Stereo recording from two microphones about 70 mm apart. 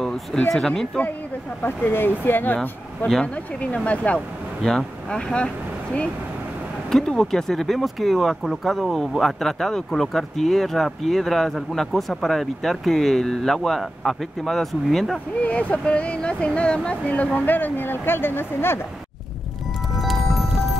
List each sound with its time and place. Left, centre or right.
0.5 s speech: centre
1.6 s speech: left
4.6 s speech: centre
6.9 s speech: centre
15.4 s speech: centre
20.0 s music: centre